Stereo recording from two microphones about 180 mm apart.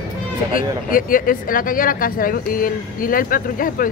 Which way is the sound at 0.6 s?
50° left (ahead or behind).